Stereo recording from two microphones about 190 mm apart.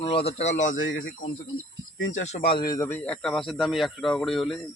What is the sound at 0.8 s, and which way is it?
Speech, 90° left.